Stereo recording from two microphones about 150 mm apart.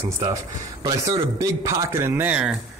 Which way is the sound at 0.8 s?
20° right (ahead or behind).